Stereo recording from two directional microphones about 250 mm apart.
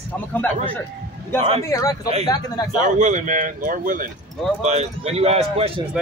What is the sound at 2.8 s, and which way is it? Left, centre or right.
Speech, right.